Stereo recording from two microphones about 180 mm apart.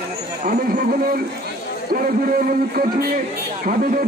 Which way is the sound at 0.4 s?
50° right (ahead or behind).